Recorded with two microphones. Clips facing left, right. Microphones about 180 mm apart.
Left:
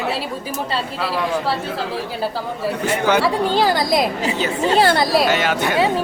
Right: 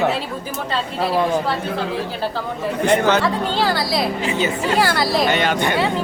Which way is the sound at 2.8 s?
10° left (ahead or behind).